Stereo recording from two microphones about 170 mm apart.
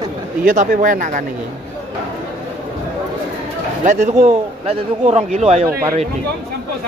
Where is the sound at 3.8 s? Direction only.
40° right (ahead or behind).